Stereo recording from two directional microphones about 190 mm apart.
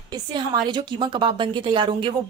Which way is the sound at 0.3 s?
25° right (ahead or behind).